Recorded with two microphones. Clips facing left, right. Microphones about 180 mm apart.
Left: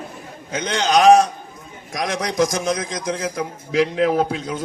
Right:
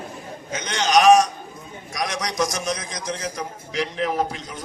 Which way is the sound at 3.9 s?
60° left (ahead or behind).